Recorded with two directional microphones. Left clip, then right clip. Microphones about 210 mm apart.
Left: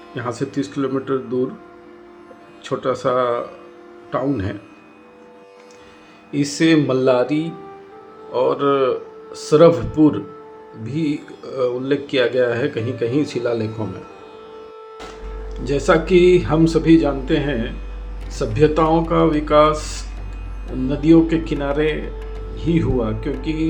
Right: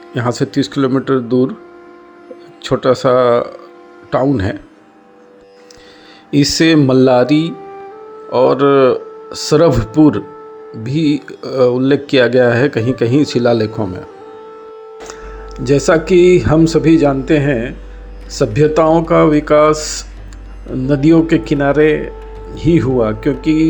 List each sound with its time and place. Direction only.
0.1 s speech: 40° right (ahead or behind)
2.6 s speech: 40° right (ahead or behind)
6.3 s speech: 40° right (ahead or behind)
15.5 s speech: 35° right (ahead or behind)